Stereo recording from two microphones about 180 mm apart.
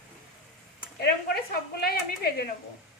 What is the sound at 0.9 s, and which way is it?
Speech, 60° left (ahead or behind).